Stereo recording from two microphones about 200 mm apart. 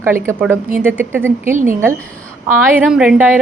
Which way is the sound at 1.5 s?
40° right (ahead or behind).